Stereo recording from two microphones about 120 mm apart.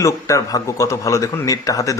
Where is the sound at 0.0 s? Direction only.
25° left (ahead or behind).